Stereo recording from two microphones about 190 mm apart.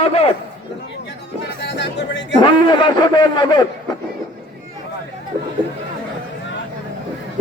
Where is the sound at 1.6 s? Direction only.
65° left (ahead or behind).